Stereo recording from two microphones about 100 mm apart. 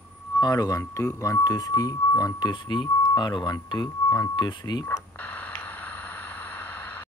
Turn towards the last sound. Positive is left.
turn(degrees=15)  # may be behind; listen again after turning